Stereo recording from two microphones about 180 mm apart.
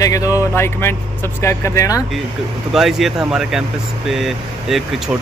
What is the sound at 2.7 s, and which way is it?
Speech, centre (ahead or behind).